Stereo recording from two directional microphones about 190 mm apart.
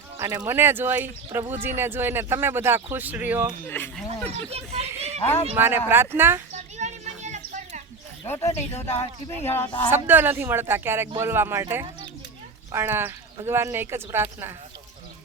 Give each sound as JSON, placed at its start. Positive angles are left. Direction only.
{"t": 0.2, "sound": "speech", "side_deg": -20}
{"t": 3.7, "sound": "speech", "side_deg": 10}
{"t": 4.3, "sound": "speech", "side_deg": -35}
{"t": 5.5, "sound": "speech", "side_deg": -10}
{"t": 6.5, "sound": "children playing", "side_deg": -35}
{"t": 8.3, "sound": "speech", "side_deg": 15}
{"t": 9.9, "sound": "speech", "side_deg": -10}